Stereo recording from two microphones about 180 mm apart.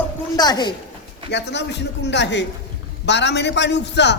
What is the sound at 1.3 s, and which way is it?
A man's voice, 70° left (ahead or behind).